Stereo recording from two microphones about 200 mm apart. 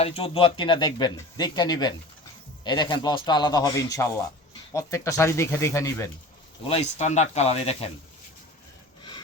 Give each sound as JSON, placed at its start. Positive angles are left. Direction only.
{"t": 0.0, "sound": "speech", "side_deg": 30}
{"t": 6.7, "sound": "speech", "side_deg": 30}